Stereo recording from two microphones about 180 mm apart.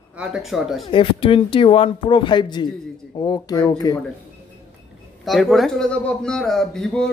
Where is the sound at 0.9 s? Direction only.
30° left (ahead or behind).